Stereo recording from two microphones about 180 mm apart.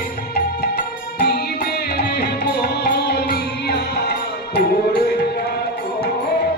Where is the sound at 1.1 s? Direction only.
60° left (ahead or behind).